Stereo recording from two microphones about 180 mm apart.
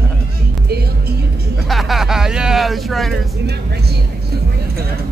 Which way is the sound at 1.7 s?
Centre (ahead or behind).